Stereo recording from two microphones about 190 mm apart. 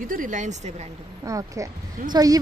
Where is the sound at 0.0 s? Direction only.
45° right (ahead or behind).